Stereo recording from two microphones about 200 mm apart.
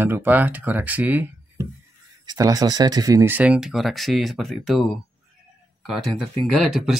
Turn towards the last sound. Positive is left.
turn(degrees=0)  # may be behind; listen again after turning